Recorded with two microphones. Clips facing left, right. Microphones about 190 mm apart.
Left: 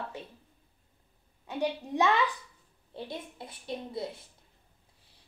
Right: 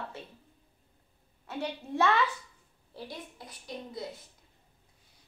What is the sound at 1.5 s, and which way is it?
A child's voice, 15° left (ahead or behind).